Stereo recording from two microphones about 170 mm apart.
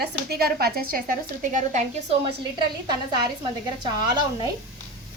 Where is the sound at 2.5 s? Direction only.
25° right (ahead or behind).